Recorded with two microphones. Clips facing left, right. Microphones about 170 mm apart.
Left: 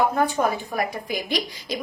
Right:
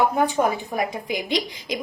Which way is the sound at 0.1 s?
20° right (ahead or behind).